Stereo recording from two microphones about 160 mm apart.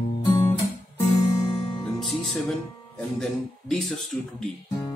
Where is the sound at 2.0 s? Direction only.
Centre (ahead or behind).